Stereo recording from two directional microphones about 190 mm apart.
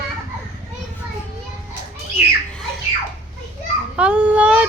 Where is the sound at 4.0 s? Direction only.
5° right (ahead or behind).